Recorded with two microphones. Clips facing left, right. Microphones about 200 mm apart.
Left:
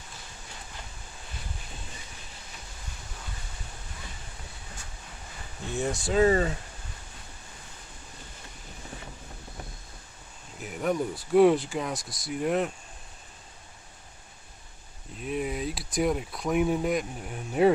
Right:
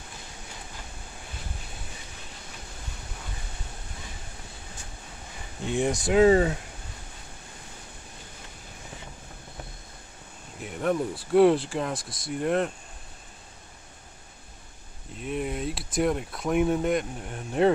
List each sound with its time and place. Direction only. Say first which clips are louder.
5.7 s speech: right 4 dB; 15° right (ahead or behind)
10.6 s speech: right 1 dB; 5° left (ahead or behind)
15.1 s speech: even; centre (ahead or behind)